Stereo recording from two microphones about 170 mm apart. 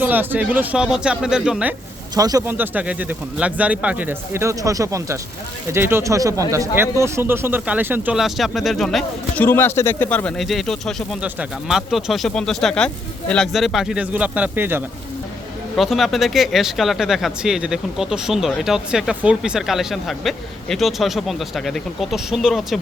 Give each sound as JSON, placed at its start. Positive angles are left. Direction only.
{"t": 0.0, "sound": "speech", "side_deg": -10}
{"t": 2.1, "sound": "speech", "side_deg": -20}
{"t": 2.5, "sound": "speech", "side_deg": -10}
{"t": 15.7, "sound": "speech", "side_deg": 0}